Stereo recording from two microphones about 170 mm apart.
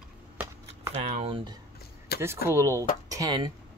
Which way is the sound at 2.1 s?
65° left (ahead or behind).